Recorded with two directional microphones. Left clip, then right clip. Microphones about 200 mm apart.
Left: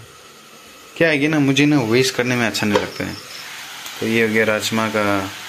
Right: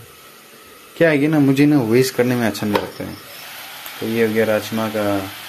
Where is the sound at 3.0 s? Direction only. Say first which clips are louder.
Left 3 dB; centre (ahead or behind).